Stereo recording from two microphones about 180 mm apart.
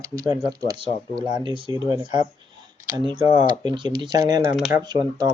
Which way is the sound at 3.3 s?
25° right (ahead or behind).